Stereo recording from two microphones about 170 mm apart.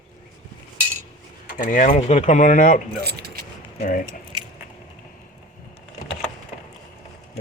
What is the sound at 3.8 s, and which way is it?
Speech, 55° left (ahead or behind).